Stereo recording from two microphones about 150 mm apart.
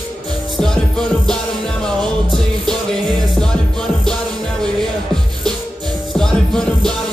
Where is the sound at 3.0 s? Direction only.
30° right (ahead or behind).